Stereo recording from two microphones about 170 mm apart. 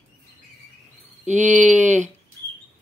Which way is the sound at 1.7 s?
45° right (ahead or behind).